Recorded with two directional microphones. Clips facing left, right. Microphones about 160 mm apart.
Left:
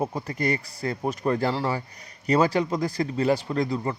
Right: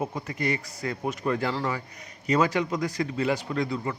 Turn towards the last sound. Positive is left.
turn(degrees=35)  # may be behind; listen again after turning